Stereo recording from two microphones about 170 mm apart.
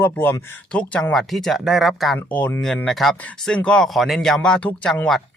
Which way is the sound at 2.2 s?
10° left (ahead or behind).